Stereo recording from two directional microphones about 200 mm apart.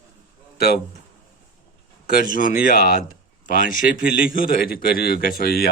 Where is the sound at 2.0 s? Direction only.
45° left (ahead or behind).